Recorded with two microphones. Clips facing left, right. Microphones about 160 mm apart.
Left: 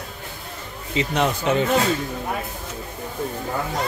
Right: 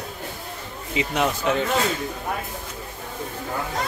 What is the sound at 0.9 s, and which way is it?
Speech, 10° right (ahead or behind).